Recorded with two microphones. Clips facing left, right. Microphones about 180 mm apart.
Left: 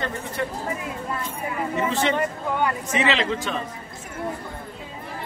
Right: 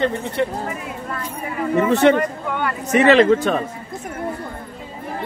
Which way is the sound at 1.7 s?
60° right (ahead or behind).